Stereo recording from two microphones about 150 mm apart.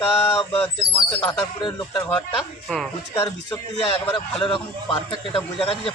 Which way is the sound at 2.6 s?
Centre (ahead or behind).